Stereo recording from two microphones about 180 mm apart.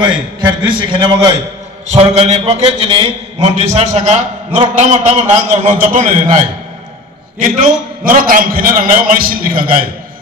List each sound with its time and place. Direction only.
0.0 s a man's voice: 25° right (ahead or behind)
1.9 s a man's voice: 35° right (ahead or behind)
7.3 s a man's voice: 45° right (ahead or behind)